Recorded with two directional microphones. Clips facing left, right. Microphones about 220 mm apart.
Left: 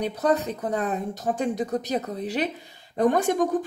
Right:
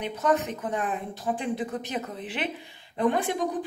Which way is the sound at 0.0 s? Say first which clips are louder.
Left 2 dB; 35° left (ahead or behind).